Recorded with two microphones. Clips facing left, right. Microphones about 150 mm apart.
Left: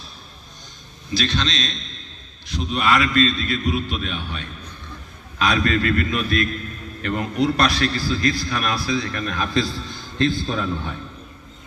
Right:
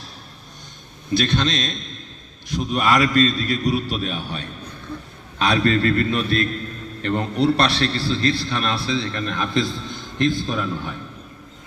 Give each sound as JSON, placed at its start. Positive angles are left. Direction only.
{"t": 1.1, "sound": "a man's voice", "side_deg": -55}